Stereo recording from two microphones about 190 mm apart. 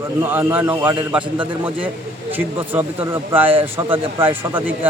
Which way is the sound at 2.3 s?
10° right (ahead or behind).